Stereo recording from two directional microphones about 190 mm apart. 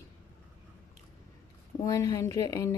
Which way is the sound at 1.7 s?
15° left (ahead or behind).